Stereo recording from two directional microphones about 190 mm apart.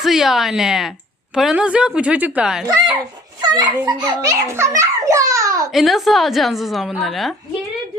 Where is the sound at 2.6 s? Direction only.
20° right (ahead or behind).